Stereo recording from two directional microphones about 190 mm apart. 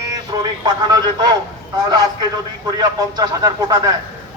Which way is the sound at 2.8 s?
20° right (ahead or behind).